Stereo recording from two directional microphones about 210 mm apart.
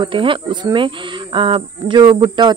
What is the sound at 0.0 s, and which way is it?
Speech, 25° right (ahead or behind).